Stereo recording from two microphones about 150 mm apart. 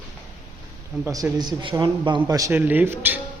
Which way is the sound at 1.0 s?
25° right (ahead or behind).